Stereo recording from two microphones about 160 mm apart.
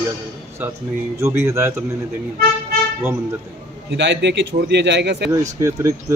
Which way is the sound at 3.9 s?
90° right.